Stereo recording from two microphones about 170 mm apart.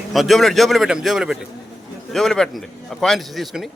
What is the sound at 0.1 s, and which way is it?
Speech, centre (ahead or behind).